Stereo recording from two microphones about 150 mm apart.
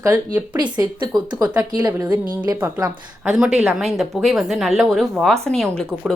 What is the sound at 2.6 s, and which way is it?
Speech, 20° right (ahead or behind).